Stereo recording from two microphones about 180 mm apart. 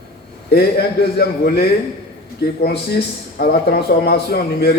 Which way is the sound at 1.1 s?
60° left (ahead or behind).